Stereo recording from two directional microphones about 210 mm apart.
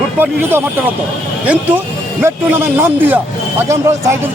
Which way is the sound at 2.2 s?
10° right (ahead or behind).